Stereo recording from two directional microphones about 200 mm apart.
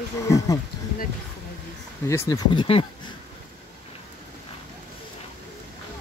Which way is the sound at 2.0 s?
15° left (ahead or behind).